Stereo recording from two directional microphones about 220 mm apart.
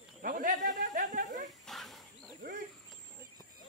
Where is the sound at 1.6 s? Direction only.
Centre (ahead or behind).